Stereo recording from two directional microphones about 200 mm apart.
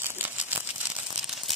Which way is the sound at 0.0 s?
10° right (ahead or behind).